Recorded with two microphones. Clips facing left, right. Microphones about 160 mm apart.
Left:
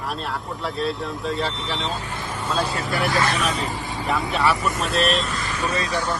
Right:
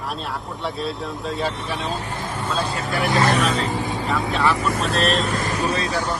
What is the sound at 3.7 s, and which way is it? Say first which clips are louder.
Vehicle: right 5 dB; 20° right (ahead or behind).